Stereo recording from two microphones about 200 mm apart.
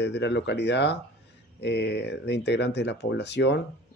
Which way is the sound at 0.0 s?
60° left (ahead or behind).